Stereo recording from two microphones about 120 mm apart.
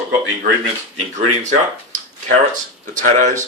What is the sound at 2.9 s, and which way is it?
Speech, 90° right.